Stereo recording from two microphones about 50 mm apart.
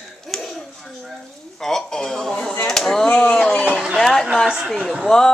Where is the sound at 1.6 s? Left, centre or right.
Centre.